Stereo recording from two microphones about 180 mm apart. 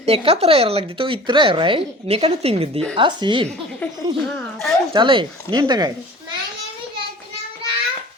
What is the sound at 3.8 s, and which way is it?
Speech, 10° left (ahead or behind).